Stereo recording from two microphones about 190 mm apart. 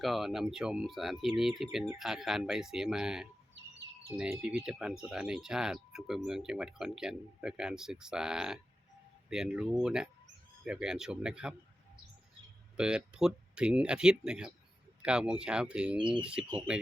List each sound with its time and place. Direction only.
0.0 s speech: centre (ahead or behind)
12.7 s speech: 5° right (ahead or behind)
16.0 s speech: 25° right (ahead or behind)
16.2 s speech: 5° right (ahead or behind)